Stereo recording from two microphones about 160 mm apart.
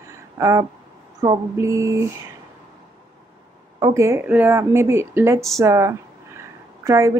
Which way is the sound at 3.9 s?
15° right (ahead or behind).